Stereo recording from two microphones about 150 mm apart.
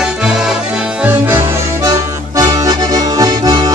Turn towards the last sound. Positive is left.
turn(degrees=-25)  # may be behind; listen again after turning